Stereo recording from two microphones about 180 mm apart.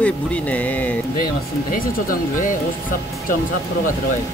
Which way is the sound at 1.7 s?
50° left (ahead or behind).